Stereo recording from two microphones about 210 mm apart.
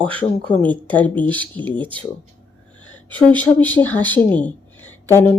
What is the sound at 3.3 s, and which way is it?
Speech, 5° left (ahead or behind).